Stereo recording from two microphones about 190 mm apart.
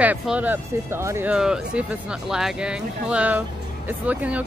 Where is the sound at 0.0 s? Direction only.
10° right (ahead or behind).